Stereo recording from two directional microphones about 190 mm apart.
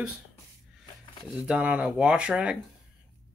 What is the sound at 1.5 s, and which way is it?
Speech, 5° right (ahead or behind).